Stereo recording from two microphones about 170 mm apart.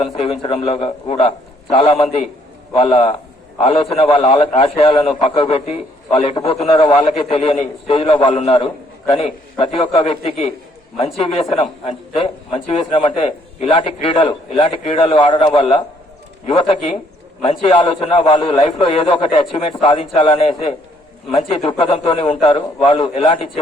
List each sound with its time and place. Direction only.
0.0 s a man's voice: 35° left (ahead or behind)